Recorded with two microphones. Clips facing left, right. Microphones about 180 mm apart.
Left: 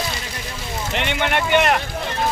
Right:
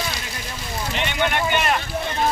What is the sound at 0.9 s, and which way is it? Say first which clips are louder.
Speech: left 1 dB; 70° left (ahead or behind).